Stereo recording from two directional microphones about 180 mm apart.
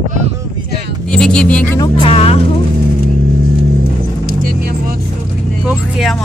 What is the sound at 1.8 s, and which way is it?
Speech, 30° left (ahead or behind).